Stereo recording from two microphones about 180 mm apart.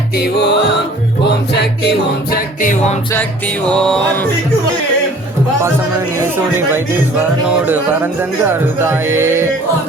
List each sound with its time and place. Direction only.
0.3 s music: 65° left (ahead or behind)
2.3 s music: 50° left (ahead or behind)
3.7 s music: 5° left (ahead or behind)
6.3 s speech: 10° right (ahead or behind)